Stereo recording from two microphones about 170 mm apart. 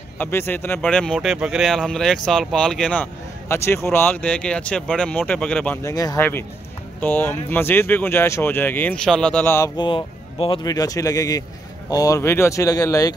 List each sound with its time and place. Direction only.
0.2 s speech: 15° left (ahead or behind)
5.9 s speech: 20° left (ahead or behind)
9.8 s speech: 30° left (ahead or behind)